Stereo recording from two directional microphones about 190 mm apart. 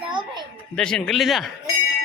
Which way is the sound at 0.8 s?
5° left (ahead or behind).